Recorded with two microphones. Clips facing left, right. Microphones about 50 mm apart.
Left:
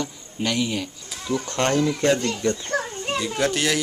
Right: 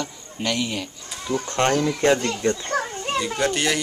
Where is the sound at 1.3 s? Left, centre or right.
Right.